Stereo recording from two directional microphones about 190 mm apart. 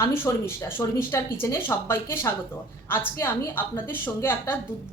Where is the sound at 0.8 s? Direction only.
20° left (ahead or behind).